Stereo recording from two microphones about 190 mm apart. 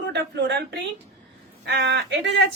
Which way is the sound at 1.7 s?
65° right (ahead or behind).